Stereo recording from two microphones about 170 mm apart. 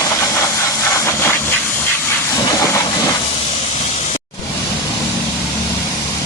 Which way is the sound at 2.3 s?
20° left (ahead or behind).